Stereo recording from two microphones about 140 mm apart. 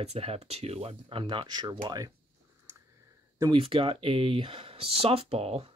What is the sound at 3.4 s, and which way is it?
Speech, 35° right (ahead or behind).